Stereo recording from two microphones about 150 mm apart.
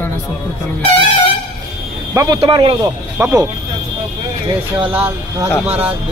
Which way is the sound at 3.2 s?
20° right (ahead or behind).